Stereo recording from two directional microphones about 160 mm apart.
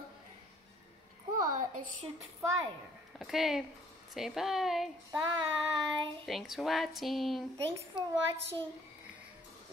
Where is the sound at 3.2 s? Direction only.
Centre (ahead or behind).